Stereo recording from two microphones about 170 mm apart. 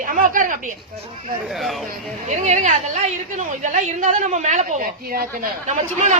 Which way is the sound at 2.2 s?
45° right (ahead or behind).